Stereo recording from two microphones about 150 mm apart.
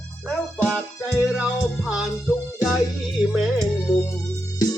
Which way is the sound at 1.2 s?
Centre (ahead or behind).